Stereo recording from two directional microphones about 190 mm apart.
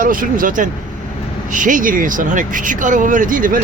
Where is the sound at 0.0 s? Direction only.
45° right (ahead or behind).